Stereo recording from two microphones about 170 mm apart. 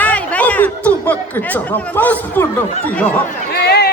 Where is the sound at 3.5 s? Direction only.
70° left (ahead or behind).